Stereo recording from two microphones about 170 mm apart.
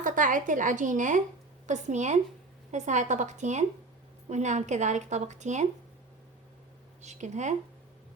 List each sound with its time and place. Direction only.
0.0 s a woman's voice: 50° right (ahead or behind)
7.0 s a woman's voice: 45° right (ahead or behind)